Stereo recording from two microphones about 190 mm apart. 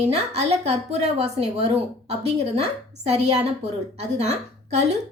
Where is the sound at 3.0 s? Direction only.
35° right (ahead or behind).